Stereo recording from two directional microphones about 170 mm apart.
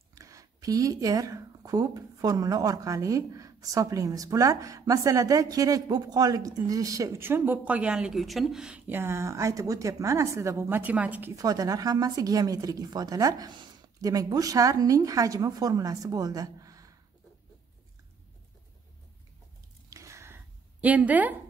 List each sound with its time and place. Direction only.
0.1 s speech: 20° right (ahead or behind)
19.9 s a sound: 20° right (ahead or behind)
20.8 s a woman's voice: 10° right (ahead or behind)